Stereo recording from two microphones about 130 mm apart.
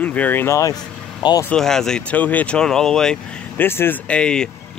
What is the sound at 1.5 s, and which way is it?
Speech, 5° left (ahead or behind).